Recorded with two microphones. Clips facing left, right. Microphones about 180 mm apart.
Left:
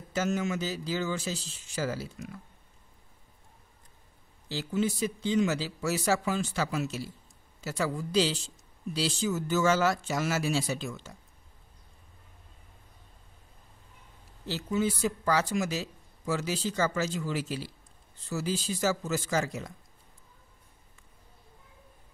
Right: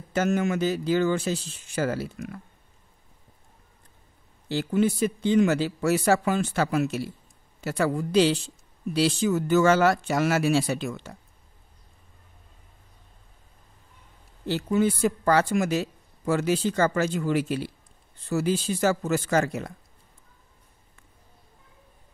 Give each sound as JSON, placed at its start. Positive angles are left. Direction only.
{"t": 0.1, "sound": "speech", "side_deg": -60}
{"t": 4.5, "sound": "speech", "side_deg": -60}
{"t": 14.4, "sound": "speech", "side_deg": -55}